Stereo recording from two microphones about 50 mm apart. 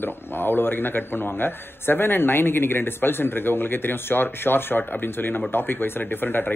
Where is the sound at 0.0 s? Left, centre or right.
Left.